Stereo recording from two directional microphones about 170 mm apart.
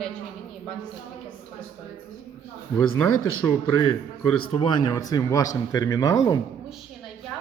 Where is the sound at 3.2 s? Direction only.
25° left (ahead or behind).